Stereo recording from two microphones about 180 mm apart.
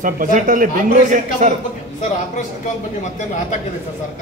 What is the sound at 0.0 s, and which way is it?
A man's voice, 45° right (ahead or behind).